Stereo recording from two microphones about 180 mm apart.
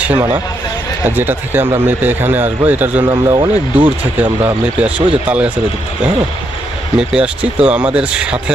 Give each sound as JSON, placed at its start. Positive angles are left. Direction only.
{"t": 0.0, "sound": "speech", "side_deg": -10}
{"t": 3.0, "sound": "speech", "side_deg": -25}
{"t": 3.8, "sound": "speech", "side_deg": -10}
{"t": 7.0, "sound": "speech", "side_deg": -5}